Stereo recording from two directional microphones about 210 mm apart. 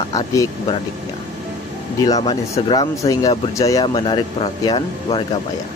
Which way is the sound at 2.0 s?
20° left (ahead or behind).